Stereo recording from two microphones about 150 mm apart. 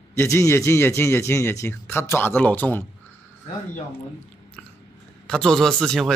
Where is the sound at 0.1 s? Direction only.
20° left (ahead or behind).